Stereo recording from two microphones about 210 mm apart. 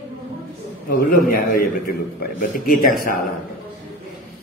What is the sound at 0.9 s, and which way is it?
A man's voice, 40° left (ahead or behind).